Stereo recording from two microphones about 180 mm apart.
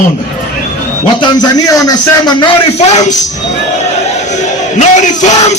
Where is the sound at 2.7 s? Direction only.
40° left (ahead or behind).